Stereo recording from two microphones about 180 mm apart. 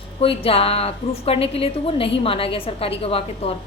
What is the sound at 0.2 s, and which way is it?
A woman's voice, 30° left (ahead or behind).